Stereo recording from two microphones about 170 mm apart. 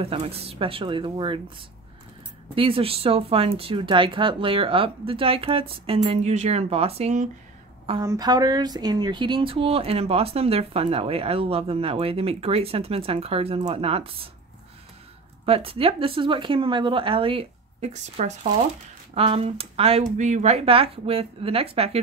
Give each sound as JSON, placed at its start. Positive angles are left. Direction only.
{"t": 0.0, "sound": "speech", "side_deg": -35}
{"t": 2.5, "sound": "speech", "side_deg": -30}
{"t": 8.0, "sound": "speech", "side_deg": -20}
{"t": 15.4, "sound": "speech", "side_deg": -35}